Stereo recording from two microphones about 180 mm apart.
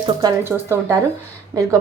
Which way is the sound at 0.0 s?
20° right (ahead or behind).